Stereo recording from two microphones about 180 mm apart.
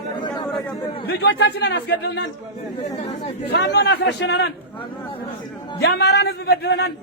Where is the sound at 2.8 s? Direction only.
40° left (ahead or behind).